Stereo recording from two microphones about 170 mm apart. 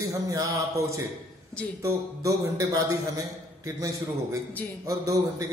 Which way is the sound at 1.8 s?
20° right (ahead or behind).